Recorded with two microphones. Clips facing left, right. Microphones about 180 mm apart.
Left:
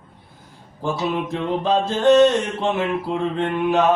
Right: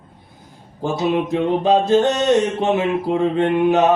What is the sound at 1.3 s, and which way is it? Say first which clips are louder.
A man's voice: right 4 dB; 20° right (ahead or behind).